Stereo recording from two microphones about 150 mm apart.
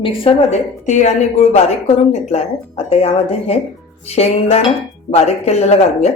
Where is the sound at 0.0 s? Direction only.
35° left (ahead or behind).